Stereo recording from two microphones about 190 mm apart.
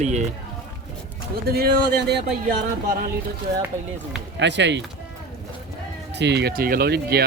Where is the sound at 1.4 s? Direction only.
55° right (ahead or behind).